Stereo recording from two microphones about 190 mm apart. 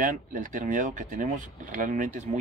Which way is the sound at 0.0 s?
45° right (ahead or behind).